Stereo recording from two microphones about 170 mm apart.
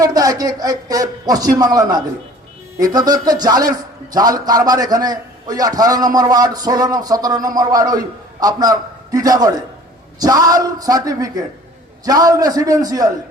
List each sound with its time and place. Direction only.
0.0 s a man's voice: 20° right (ahead or behind)